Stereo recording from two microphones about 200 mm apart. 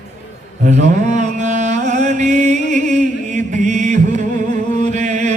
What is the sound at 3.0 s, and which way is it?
Chant, 40° right (ahead or behind).